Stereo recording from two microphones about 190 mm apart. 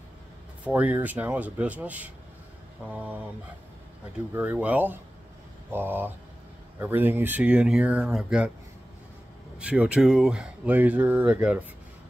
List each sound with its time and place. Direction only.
0.7 s speech: 10° right (ahead or behind)
4.3 s speech: 10° right (ahead or behind)
9.6 s speech: 5° right (ahead or behind)